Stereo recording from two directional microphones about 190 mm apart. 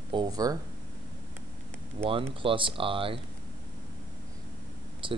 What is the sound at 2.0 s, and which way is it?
Speech, 30° right (ahead or behind).